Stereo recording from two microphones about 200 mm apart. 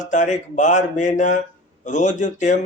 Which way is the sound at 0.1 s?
40° left (ahead or behind).